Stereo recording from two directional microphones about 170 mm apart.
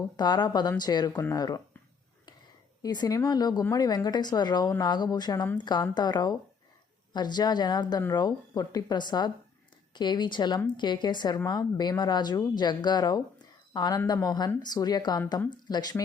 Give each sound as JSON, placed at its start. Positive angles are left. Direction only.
{"t": 0.0, "sound": "speech", "side_deg": 25}
{"t": 2.8, "sound": "speech", "side_deg": 25}